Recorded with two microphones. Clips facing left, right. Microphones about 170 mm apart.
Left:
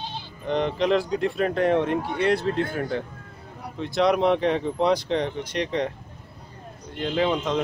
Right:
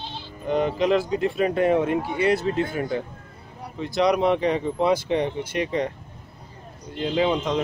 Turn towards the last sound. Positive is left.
turn(degrees=0)  # may be behind; listen again after turning